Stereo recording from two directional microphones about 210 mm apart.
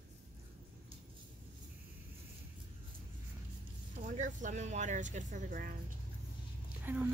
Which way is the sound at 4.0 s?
35° right (ahead or behind).